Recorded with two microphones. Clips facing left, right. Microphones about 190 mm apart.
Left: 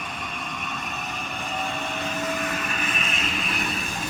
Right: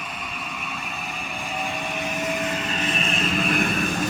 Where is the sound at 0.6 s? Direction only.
5° right (ahead or behind); by 3.6 s 40° right (ahead or behind).